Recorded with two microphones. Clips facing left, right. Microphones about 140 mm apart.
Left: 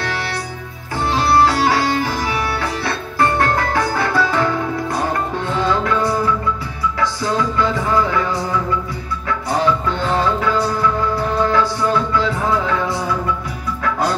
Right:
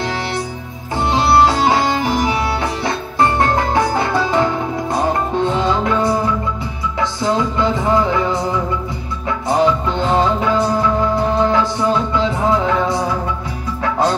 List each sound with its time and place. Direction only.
0.0 s music: 20° right (ahead or behind)